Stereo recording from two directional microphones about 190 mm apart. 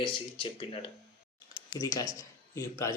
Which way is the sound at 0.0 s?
25° left (ahead or behind).